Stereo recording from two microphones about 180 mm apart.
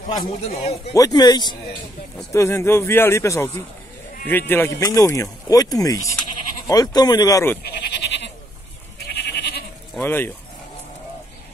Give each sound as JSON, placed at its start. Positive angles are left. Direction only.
{"t": 0.1, "sound": "a man's voice", "side_deg": 30}
{"t": 0.9, "sound": "speech", "side_deg": 20}
{"t": 7.6, "sound": "goat", "side_deg": 65}
{"t": 9.2, "sound": "goat", "side_deg": 65}
{"t": 9.9, "sound": "speech", "side_deg": 10}